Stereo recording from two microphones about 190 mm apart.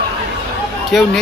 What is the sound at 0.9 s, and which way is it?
Speech, centre (ahead or behind).